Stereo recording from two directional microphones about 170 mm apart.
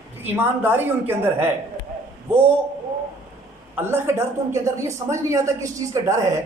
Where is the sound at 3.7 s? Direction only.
15° right (ahead or behind).